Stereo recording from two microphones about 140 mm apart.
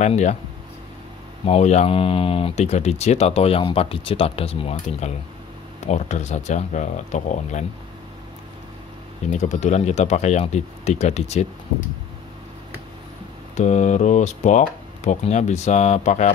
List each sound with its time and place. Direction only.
0.0 s speech: 55° left (ahead or behind)
1.4 s speech: 50° left (ahead or behind)
5.9 s speech: 55° left (ahead or behind)
9.3 s speech: 55° left (ahead or behind)
13.6 s speech: 55° left (ahead or behind)